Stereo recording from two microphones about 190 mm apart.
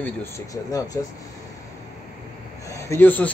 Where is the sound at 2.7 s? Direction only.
15° left (ahead or behind).